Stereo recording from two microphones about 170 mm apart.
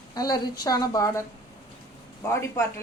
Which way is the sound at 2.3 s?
15° left (ahead or behind).